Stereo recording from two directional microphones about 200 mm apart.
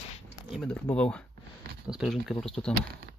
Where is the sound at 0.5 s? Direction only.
5° left (ahead or behind).